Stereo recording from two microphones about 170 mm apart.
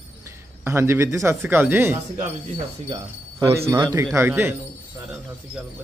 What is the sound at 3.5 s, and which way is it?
A man's voice, 20° right (ahead or behind).